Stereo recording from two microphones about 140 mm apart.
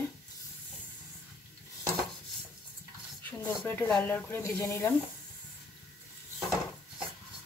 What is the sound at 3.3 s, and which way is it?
Speech, 15° left (ahead or behind).